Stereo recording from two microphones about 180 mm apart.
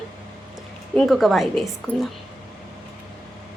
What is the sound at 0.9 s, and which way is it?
A woman's voice, centre (ahead or behind).